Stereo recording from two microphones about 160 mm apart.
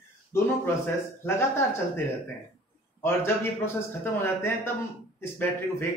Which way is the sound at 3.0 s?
15° left (ahead or behind).